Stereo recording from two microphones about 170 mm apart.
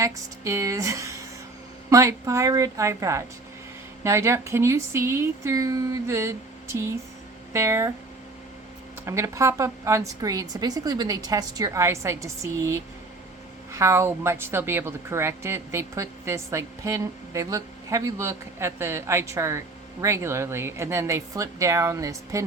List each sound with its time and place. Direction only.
0.0 s speech: 15° right (ahead or behind)
9.0 s a woman's voice: 20° right (ahead or behind)